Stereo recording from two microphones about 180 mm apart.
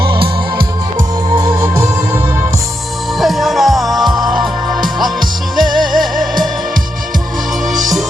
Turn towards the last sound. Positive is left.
turn(degrees=0)  # may be behind; listen again after turning